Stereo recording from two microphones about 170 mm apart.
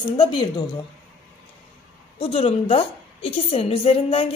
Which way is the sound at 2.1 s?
35° left (ahead or behind).